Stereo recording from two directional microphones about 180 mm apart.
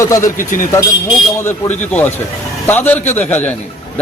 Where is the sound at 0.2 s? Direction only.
50° left (ahead or behind).